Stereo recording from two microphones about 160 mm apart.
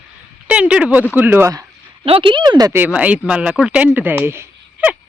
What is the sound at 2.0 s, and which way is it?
Speech, 35° right (ahead or behind).